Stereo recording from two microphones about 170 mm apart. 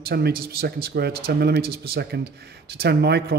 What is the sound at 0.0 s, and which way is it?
A man's voice, 65° right (ahead or behind).